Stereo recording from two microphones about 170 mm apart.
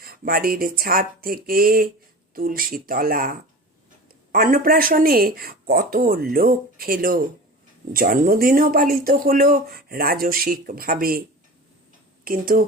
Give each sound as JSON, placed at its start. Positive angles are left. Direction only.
{"t": 0.0, "sound": "speech", "side_deg": -60}
{"t": 12.2, "sound": "speech", "side_deg": -60}